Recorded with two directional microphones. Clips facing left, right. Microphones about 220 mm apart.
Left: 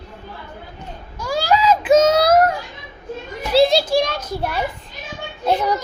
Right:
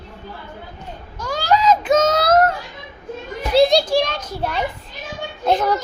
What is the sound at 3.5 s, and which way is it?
A child's voice, 5° left (ahead or behind).